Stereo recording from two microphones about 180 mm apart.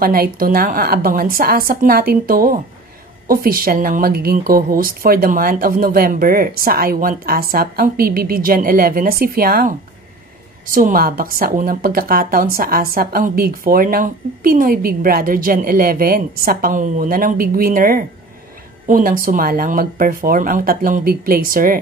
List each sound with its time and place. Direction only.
0.0 s a woman's voice: 55° right (ahead or behind)